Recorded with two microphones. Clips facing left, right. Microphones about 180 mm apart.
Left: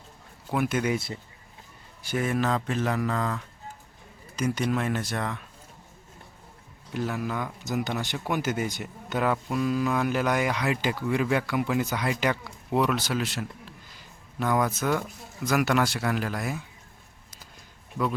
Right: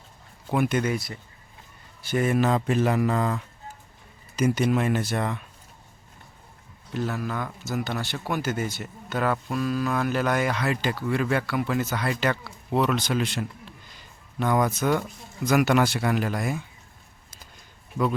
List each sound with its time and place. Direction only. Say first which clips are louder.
0.5 s speech: right 3 dB; 5° left (ahead or behind)
0.9 s speech: left 1 dB; 25° left (ahead or behind)
2.1 s speech: right 4 dB; 5° right (ahead or behind)
6.9 s speech: right 1 dB; 10° left (ahead or behind)